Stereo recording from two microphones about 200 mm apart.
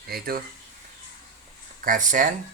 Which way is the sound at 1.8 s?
40° right (ahead or behind).